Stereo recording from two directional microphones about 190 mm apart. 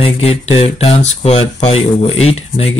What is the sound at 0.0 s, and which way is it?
Speech, 30° left (ahead or behind).